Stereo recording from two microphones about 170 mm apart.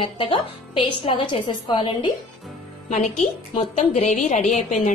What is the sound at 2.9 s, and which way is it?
A woman's voice, 45° left (ahead or behind).